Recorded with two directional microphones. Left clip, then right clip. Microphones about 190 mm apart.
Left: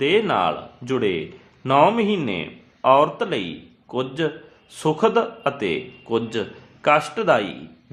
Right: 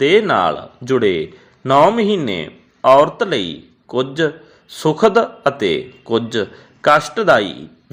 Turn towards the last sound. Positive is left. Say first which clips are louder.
# right 6 dB
turn(degrees=-25)  # may be behind; listen again after turning